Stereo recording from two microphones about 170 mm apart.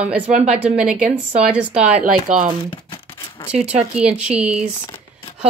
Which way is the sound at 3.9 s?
5° right (ahead or behind).